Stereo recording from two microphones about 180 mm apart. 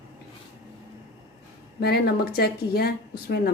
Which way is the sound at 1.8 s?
60° left (ahead or behind).